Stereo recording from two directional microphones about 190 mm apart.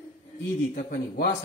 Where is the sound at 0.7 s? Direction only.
55° left (ahead or behind).